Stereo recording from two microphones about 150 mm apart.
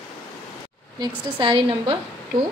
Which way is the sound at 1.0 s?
30° right (ahead or behind).